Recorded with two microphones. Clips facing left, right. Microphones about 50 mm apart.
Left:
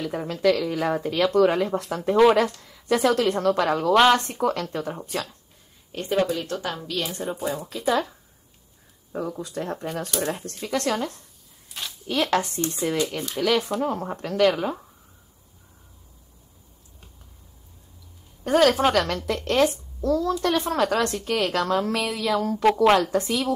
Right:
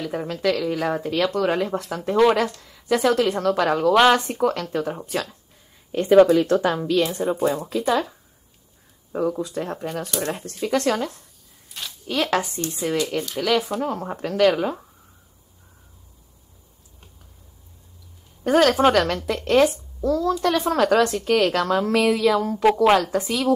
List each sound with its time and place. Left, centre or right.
0.0 s speech: centre
5.9 s speech: right
7.1 s speech: centre
18.4 s speech: centre